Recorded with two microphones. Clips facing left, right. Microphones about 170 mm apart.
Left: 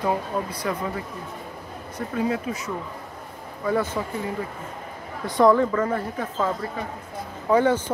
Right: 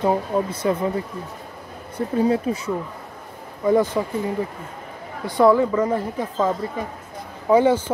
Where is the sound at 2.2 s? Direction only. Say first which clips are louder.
Right 6 dB; 30° right (ahead or behind).